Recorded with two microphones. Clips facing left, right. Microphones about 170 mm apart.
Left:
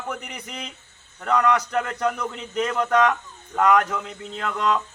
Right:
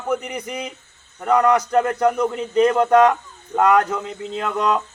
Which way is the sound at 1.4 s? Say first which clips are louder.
Right 7 dB; 30° right (ahead or behind).